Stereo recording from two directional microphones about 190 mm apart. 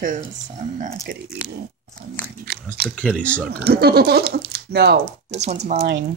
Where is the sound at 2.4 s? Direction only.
55° right (ahead or behind).